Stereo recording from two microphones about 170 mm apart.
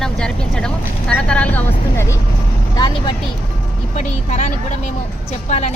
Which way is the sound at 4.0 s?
45° left (ahead or behind).